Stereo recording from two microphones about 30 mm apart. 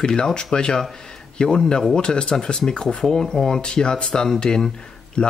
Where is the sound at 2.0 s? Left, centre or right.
Left.